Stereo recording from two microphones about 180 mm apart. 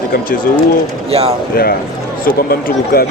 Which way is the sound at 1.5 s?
55° left (ahead or behind).